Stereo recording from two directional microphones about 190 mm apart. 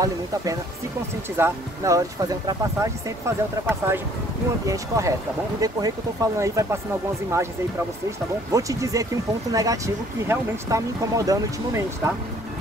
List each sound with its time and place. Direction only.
1.4 s speech: 15° right (ahead or behind)
8.5 s speech: 15° right (ahead or behind)